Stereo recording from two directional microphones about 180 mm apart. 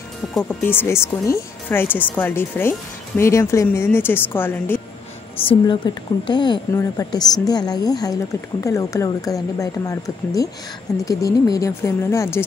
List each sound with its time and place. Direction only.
0.7 s speech: 15° left (ahead or behind)
5.4 s speech: 30° left (ahead or behind)